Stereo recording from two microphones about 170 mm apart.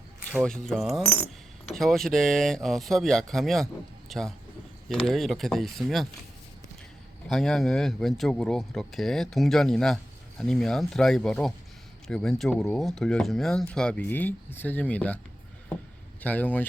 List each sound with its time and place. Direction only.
0.3 s speech: centre (ahead or behind)
1.1 s coin: 35° left (ahead or behind)
1.8 s speech: centre (ahead or behind)
7.3 s speech: centre (ahead or behind)
16.2 s speech: 10° left (ahead or behind)